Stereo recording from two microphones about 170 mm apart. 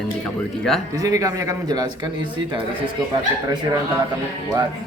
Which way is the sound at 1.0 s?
20° right (ahead or behind).